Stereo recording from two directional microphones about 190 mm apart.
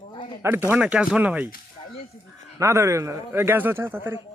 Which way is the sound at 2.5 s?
15° right (ahead or behind).